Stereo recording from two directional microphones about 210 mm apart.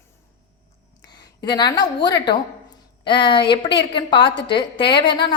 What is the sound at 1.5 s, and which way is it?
A woman's voice, 20° left (ahead or behind).